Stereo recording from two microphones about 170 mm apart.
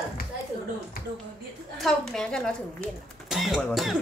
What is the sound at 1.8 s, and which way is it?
Speech, 5° left (ahead or behind).